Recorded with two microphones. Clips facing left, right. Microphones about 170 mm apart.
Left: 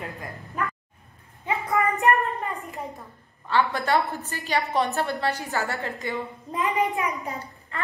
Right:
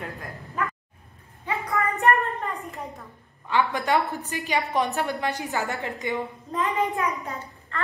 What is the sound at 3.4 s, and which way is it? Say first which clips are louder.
A woman's voice: even; 15° right (ahead or behind).